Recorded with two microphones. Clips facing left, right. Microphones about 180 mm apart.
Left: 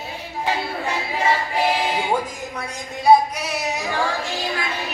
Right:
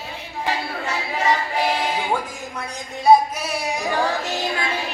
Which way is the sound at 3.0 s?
10° right (ahead or behind).